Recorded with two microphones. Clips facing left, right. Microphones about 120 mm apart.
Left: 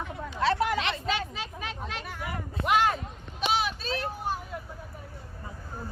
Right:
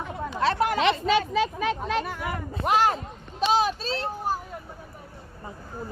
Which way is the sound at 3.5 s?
40° right (ahead or behind).